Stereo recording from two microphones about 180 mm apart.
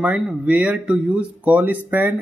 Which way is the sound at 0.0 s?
5° right (ahead or behind).